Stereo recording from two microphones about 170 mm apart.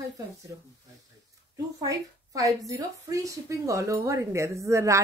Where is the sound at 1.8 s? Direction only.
20° right (ahead or behind).